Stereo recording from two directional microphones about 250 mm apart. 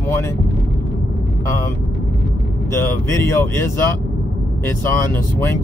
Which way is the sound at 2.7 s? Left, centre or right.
Centre.